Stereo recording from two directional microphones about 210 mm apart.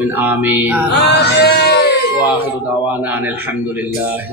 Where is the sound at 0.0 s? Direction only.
10° right (ahead or behind).